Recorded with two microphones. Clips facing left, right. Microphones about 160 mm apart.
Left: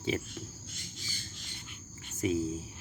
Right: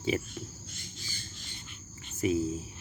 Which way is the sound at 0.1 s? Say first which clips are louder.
Right 3 dB; 5° right (ahead or behind).